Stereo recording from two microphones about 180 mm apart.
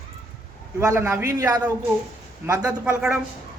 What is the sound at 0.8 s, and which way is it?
A man's voice, 15° right (ahead or behind).